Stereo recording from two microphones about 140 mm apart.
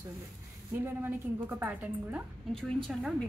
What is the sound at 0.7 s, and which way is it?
A woman's voice, 15° right (ahead or behind).